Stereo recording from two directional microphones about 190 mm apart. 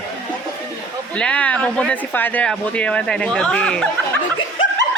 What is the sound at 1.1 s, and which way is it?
Speech, 5° left (ahead or behind).